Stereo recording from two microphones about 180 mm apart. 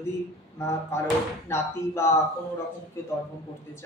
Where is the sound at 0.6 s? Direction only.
15° left (ahead or behind).